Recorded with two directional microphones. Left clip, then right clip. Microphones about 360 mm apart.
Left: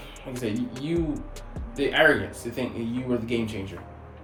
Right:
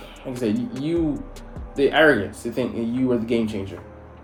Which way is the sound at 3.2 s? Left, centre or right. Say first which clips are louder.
Right 5 dB; centre.